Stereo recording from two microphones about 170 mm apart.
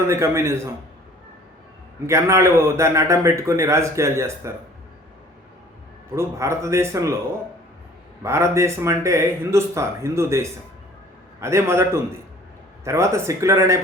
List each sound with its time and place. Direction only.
0.1 s a man's voice: 15° right (ahead or behind)
2.0 s a man's voice: 15° right (ahead or behind)
6.1 s a man's voice: 15° right (ahead or behind)
8.2 s a man's voice: 15° right (ahead or behind)